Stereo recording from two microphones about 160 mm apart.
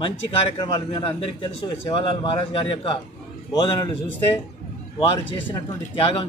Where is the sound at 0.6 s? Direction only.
30° left (ahead or behind).